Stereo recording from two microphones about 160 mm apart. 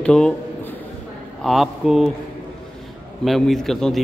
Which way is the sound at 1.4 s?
Centre (ahead or behind).